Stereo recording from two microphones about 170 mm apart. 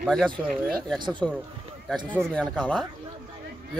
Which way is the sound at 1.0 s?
25° right (ahead or behind).